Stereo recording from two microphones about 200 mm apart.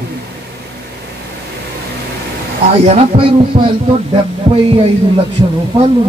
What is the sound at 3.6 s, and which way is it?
Speech, 25° right (ahead or behind).